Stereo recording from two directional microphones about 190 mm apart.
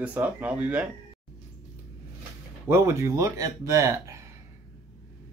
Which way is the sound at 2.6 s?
15° right (ahead or behind).